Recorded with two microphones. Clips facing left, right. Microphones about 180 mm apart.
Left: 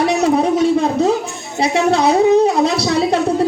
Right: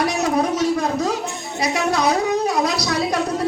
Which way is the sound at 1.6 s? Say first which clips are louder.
Left 6 dB; 25° left (ahead or behind).